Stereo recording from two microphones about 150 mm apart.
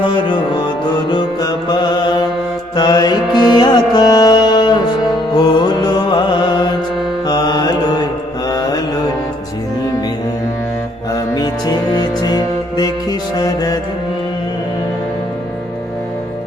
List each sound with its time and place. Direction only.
0.1 s music: 30° left (ahead or behind)
8.4 s mantra: 25° left (ahead or behind)
11.1 s music: 25° left (ahead or behind)